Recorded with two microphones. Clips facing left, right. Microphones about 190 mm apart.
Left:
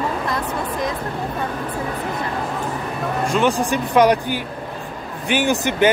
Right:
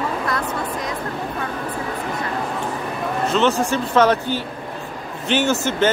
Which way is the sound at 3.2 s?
10° left (ahead or behind).